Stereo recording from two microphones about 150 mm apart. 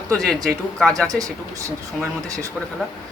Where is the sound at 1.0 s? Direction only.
20° right (ahead or behind).